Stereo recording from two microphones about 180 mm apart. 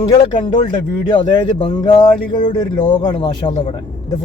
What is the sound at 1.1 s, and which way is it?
Speech, 25° left (ahead or behind).